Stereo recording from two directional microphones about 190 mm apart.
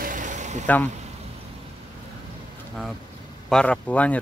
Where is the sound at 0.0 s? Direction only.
45° right (ahead or behind).